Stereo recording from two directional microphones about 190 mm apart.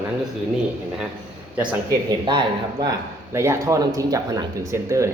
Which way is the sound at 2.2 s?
25° right (ahead or behind).